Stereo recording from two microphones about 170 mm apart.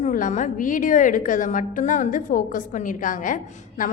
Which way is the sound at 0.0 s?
50° left (ahead or behind).